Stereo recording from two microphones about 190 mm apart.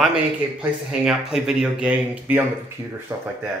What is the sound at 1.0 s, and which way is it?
Speech, 5° right (ahead or behind).